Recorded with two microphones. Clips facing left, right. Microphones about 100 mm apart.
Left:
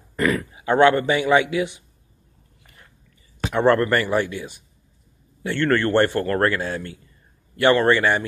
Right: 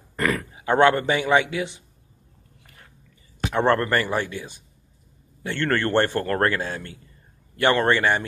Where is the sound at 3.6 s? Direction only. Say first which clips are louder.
Left 3 dB; 35° right (ahead or behind).